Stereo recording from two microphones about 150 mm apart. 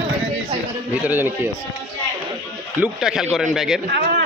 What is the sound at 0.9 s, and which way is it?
Speech, 10° right (ahead or behind).